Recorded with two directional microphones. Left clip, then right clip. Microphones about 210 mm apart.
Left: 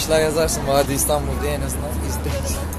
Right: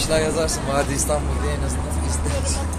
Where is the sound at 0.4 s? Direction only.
40° left (ahead or behind).